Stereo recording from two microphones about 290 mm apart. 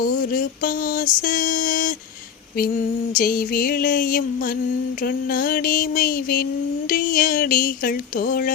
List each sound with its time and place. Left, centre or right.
0.0 s mantra: left
3.2 s mantra: left
5.3 s mantra: left